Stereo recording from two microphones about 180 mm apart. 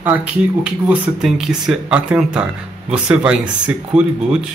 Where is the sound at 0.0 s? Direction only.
5° right (ahead or behind).